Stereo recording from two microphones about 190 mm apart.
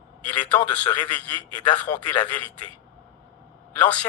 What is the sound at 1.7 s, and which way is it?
Speech, 5° left (ahead or behind).